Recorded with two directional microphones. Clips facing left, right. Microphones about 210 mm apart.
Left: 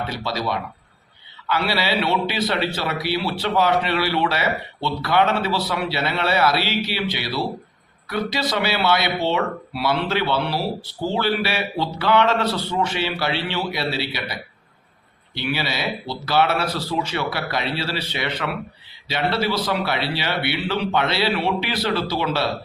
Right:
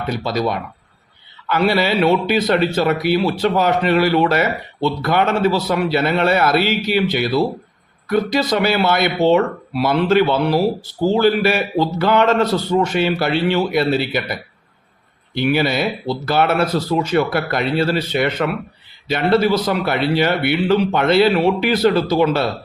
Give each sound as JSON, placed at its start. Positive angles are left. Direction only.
{"t": 0.1, "sound": "speech", "side_deg": -50}
{"t": 15.4, "sound": "speech", "side_deg": -50}